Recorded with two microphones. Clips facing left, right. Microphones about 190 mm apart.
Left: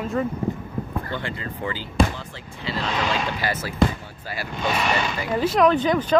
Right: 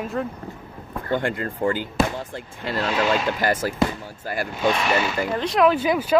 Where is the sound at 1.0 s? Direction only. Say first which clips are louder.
Right 6 dB; 50° right (ahead or behind).